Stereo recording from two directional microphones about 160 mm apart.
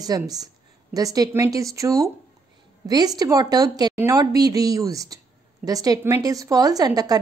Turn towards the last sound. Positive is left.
turn(degrees=-25)  # may be behind; listen again after turning